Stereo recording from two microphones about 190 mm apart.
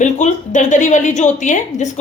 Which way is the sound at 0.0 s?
40° left (ahead or behind).